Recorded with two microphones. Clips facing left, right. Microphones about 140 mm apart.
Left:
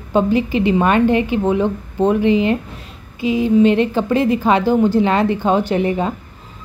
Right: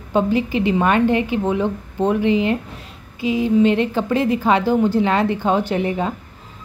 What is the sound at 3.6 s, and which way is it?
A woman's voice, 25° left (ahead or behind).